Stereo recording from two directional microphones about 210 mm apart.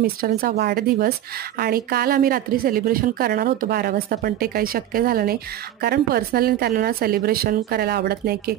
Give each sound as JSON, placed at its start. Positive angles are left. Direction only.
{"t": 0.0, "sound": "a woman's voice", "side_deg": -45}